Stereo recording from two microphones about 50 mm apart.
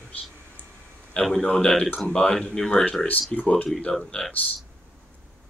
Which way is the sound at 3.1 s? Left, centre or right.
Left.